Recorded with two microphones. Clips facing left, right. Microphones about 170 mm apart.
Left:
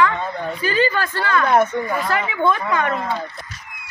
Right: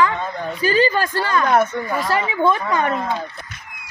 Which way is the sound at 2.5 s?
35° right (ahead or behind).